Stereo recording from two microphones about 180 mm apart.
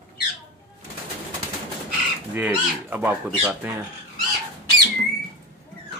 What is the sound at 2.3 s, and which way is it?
Speech, 10° right (ahead or behind).